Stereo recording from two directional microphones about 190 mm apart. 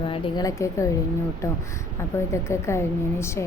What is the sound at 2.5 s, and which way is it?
Speech, 15° left (ahead or behind).